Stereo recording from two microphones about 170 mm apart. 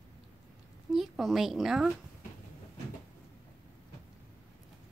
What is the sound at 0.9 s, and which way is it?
A woman's voice, centre (ahead or behind).